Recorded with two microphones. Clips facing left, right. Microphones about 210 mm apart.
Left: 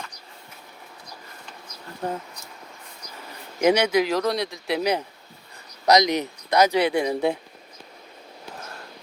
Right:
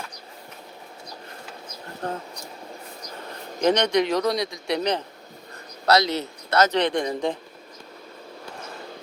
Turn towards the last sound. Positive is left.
turn(degrees=10)  # may be behind; listen again after turning